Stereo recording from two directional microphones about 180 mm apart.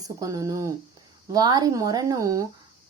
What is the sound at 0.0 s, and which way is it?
Speech, 20° right (ahead or behind).